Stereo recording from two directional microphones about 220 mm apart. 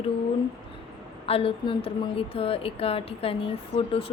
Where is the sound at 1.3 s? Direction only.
25° left (ahead or behind).